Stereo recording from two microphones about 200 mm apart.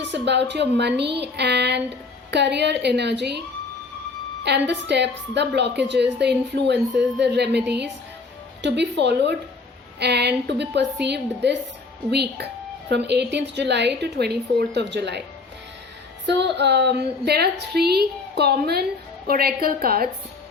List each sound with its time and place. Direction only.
0.0 s a woman's voice: 60° right (ahead or behind)
4.4 s a woman's voice: 60° right (ahead or behind)
8.6 s a woman's voice: 60° right (ahead or behind)
16.4 s a woman's voice: 60° right (ahead or behind)